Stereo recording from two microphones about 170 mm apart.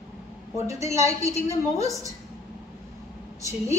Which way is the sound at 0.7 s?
15° right (ahead or behind).